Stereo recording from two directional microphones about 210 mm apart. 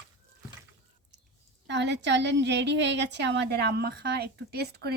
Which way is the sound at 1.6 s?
55° right (ahead or behind).